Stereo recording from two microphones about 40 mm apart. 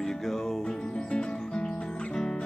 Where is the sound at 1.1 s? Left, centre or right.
Left.